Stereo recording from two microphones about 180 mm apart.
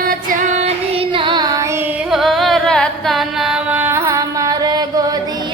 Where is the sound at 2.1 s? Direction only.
Centre (ahead or behind); by 5.1 s 20° right (ahead or behind).